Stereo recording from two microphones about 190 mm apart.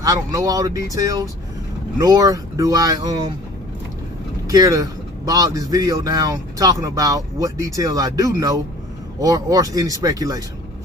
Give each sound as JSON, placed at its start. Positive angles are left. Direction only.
{"t": 0.0, "sound": "speech", "side_deg": -20}
{"t": 4.5, "sound": "speech", "side_deg": -20}